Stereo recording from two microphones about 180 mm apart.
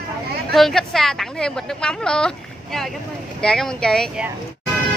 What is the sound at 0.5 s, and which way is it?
A woman's voice, centre (ahead or behind).